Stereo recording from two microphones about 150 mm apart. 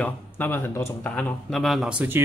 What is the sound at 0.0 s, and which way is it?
Speech, 15° left (ahead or behind).